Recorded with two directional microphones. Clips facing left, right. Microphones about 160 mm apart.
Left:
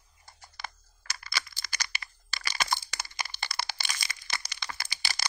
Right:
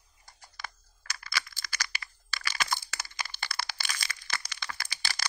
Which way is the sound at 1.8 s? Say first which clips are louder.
Even; 20° left (ahead or behind).